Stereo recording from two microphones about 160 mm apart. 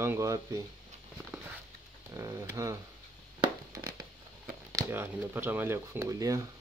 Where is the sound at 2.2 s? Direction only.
20° right (ahead or behind).